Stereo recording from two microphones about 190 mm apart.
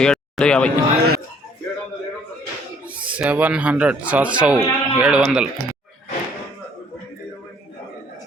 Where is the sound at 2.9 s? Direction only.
10° right (ahead or behind).